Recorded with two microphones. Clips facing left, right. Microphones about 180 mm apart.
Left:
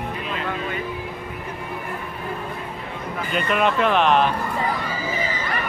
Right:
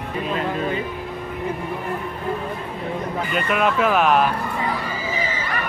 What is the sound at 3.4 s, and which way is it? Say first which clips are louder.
Speech: even; centre (ahead or behind).